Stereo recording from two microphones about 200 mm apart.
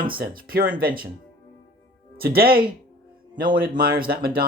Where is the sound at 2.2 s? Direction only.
50° right (ahead or behind).